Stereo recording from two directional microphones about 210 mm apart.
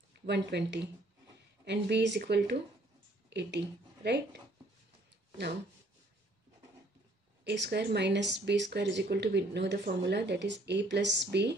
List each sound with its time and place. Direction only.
0.3 s speech: 55° right (ahead or behind)
7.4 s speech: 55° right (ahead or behind)